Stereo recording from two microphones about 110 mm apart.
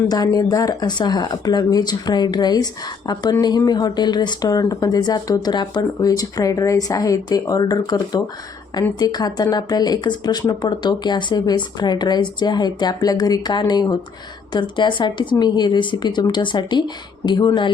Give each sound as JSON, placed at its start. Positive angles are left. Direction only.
{"t": 0.1, "sound": "speech", "side_deg": 35}
{"t": 3.7, "sound": "a woman's voice", "side_deg": 40}